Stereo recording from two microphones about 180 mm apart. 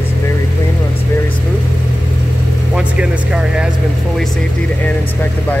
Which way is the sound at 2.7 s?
5° right (ahead or behind).